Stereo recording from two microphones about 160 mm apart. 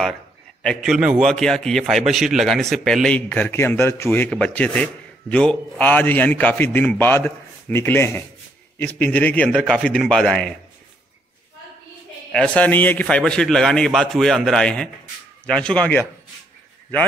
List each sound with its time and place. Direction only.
0.6 s a man's voice: centre (ahead or behind)
12.3 s a man's voice: 5° left (ahead or behind)